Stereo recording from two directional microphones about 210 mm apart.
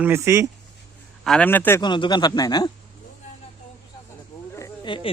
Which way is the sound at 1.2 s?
5° left (ahead or behind).